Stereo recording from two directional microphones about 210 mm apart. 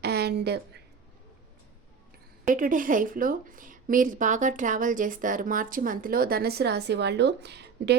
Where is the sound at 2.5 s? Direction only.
40° right (ahead or behind).